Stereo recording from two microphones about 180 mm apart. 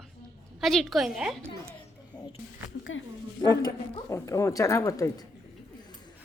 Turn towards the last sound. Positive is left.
turn(degrees=20)  # may be behind; listen again after turning